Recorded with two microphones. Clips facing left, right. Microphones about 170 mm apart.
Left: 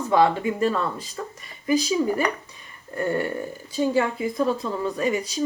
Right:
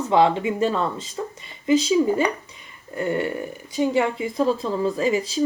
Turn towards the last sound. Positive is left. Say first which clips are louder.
# right 3 dB
turn(degrees=-25)  # may be behind; listen again after turning